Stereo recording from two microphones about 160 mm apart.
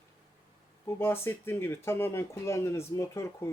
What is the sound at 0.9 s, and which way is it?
Speech, 15° left (ahead or behind).